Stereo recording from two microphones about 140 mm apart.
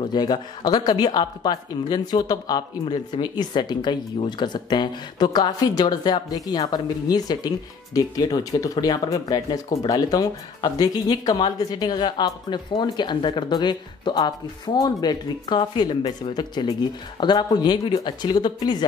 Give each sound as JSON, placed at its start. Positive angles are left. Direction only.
{"t": 0.0, "sound": "speech", "side_deg": 30}